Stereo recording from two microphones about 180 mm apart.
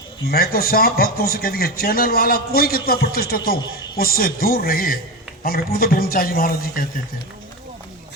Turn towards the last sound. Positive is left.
turn(degrees=55)  # may be behind; listen again after turning